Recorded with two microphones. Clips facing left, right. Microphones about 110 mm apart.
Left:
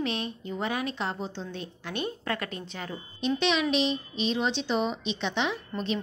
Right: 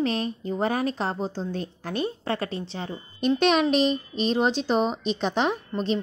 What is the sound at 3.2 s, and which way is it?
A woman's voice, 50° right (ahead or behind).